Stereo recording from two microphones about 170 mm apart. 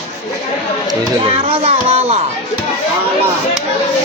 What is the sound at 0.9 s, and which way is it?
Speech, 30° right (ahead or behind).